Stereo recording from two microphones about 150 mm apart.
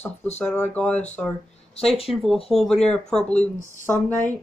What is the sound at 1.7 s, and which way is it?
Speech, 40° left (ahead or behind).